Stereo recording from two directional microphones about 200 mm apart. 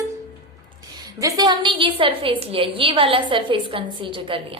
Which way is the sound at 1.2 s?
20° right (ahead or behind).